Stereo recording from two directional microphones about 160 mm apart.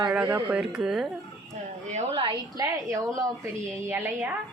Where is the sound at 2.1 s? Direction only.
30° right (ahead or behind).